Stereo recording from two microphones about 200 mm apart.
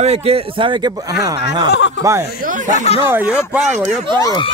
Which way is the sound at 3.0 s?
10° right (ahead or behind).